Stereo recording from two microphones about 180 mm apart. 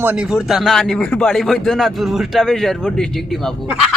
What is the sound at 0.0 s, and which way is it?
Speech, 5° right (ahead or behind).